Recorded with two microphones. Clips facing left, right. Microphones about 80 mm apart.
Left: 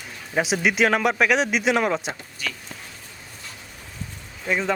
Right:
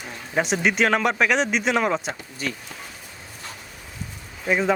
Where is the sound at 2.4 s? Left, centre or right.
Right.